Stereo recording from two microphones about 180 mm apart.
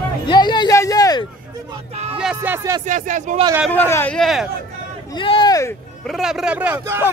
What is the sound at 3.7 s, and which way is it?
Speech, 10° left (ahead or behind).